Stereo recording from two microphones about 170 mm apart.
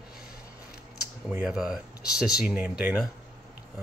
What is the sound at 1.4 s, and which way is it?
Speech, 5° right (ahead or behind).